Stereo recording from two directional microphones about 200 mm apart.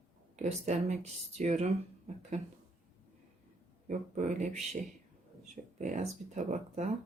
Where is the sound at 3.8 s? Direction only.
35° right (ahead or behind).